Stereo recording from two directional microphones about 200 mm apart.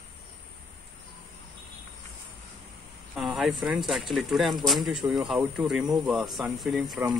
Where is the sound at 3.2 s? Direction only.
Centre (ahead or behind).